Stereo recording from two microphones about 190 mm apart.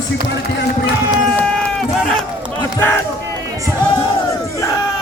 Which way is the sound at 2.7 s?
15° left (ahead or behind).